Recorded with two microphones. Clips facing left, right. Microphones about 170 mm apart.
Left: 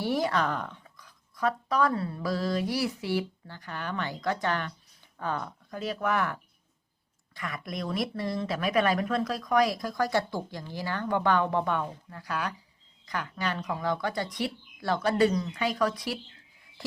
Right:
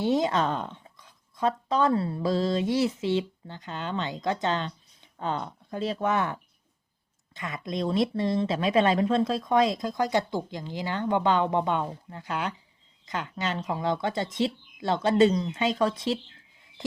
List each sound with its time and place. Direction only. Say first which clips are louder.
0.0 s speech: right 3 dB; 20° right (ahead or behind)